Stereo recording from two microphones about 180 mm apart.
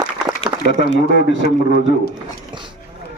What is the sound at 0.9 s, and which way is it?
A man's voice, 70° left (ahead or behind).